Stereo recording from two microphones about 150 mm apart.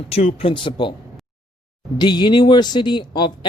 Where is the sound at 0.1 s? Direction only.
40° left (ahead or behind).